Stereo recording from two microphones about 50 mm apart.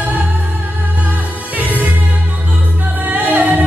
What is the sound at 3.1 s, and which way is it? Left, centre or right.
Music, right.